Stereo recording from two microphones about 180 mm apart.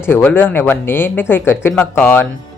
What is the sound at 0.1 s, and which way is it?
Speech, 10° left (ahead or behind).